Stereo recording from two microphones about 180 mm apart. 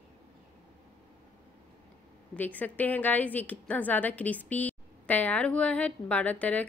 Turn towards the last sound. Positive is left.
turn(degrees=10)  # may be behind; listen again after turning